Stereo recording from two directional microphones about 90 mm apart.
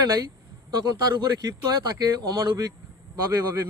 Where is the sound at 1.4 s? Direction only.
45° right (ahead or behind).